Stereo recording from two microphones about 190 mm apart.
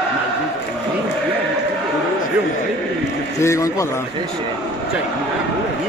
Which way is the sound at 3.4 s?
15° left (ahead or behind).